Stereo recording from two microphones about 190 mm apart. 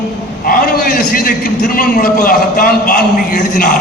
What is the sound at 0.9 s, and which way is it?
A man's voice, 50° left (ahead or behind).